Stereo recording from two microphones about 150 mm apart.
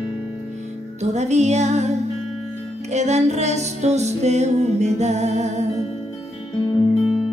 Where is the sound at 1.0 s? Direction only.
50° right (ahead or behind).